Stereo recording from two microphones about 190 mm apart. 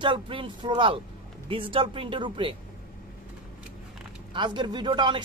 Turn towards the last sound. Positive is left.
turn(degrees=-25)  # may be behind; listen again after turning